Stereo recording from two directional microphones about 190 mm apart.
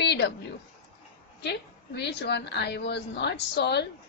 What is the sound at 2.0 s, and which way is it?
A woman's voice, 65° left (ahead or behind).